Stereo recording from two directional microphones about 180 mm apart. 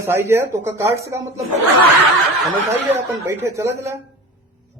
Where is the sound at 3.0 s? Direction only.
15° right (ahead or behind).